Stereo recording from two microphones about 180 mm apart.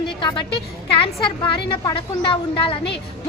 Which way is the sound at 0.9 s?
30° left (ahead or behind).